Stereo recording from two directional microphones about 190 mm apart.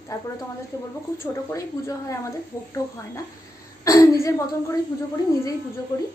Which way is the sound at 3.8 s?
15° left (ahead or behind).